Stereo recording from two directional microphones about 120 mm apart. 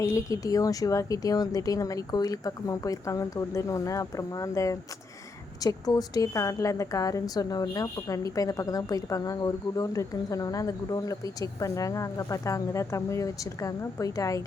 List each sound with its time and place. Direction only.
0.0 s a woman's voice: 25° left (ahead or behind)